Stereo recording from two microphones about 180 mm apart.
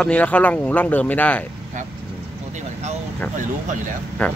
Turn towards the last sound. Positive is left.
turn(degrees=5)  # may be behind; listen again after turning